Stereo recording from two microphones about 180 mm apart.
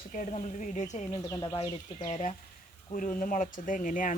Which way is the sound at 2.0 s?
35° left (ahead or behind).